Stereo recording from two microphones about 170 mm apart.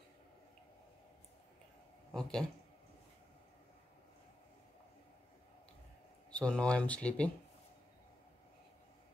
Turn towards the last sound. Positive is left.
turn(degrees=5)  # may be behind; listen again after turning